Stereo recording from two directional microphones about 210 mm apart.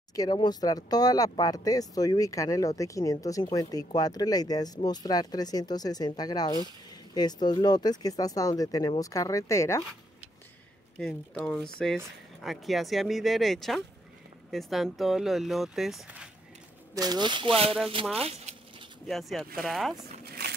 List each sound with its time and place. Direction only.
0.1 s speech: 20° left (ahead or behind)
11.0 s speech: 5° left (ahead or behind)
16.9 s speech: 20° right (ahead or behind)
18.2 s a sound: 30° right (ahead or behind)
19.0 s speech: centre (ahead or behind)